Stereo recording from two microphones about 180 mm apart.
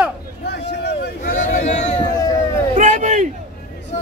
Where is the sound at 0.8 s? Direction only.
70° left (ahead or behind).